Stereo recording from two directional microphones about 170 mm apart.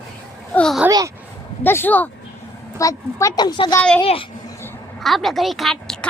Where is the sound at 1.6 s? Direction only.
10° left (ahead or behind).